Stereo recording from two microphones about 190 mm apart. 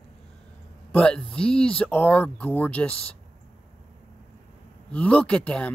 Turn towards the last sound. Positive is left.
turn(degrees=5)  # may be behind; listen again after turning